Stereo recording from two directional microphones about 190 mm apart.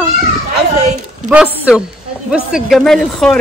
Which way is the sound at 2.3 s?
Centre (ahead or behind).